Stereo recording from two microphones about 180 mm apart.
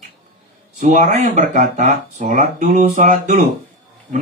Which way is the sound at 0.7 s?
45° right (ahead or behind).